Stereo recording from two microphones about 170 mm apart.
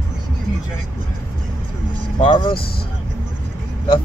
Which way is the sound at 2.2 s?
30° left (ahead or behind).